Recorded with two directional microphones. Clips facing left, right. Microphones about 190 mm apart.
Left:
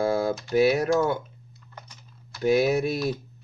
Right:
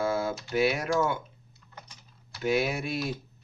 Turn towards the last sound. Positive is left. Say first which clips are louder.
# left 7 dB
turn(degrees=40)  # may be behind; listen again after turning